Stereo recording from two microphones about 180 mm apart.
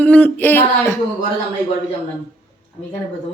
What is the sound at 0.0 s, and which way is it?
Speech, 10° left (ahead or behind).